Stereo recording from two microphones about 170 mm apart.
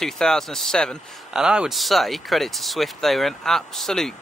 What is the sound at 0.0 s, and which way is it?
Speech, 5° left (ahead or behind).